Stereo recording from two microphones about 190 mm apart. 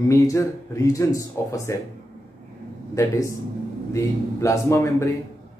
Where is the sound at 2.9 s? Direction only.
15° left (ahead or behind).